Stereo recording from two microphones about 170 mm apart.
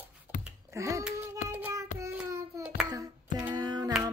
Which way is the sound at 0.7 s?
15° right (ahead or behind).